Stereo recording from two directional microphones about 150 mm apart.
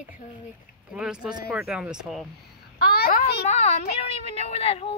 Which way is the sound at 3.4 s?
50° left (ahead or behind).